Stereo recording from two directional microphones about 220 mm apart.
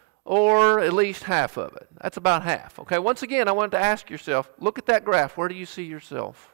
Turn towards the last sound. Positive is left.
turn(degrees=-15)  # may be behind; listen again after turning